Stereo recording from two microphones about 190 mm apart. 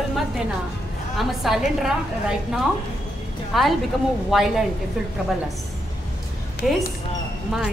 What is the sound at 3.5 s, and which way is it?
Speech, centre (ahead or behind).